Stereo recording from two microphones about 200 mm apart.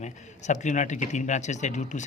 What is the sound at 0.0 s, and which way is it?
Speech, 35° left (ahead or behind).